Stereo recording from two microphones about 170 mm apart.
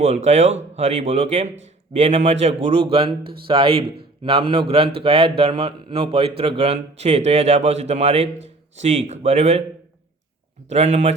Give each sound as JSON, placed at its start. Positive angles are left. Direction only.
{"t": 0.3, "sound": "a man's voice", "side_deg": -40}
{"t": 10.7, "sound": "a man's voice", "side_deg": -40}